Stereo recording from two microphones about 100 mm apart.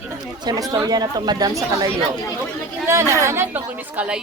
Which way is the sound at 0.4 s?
40° right (ahead or behind).